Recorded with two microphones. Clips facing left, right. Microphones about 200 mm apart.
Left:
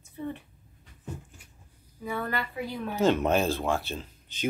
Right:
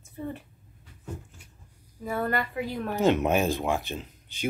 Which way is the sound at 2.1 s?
45° right (ahead or behind).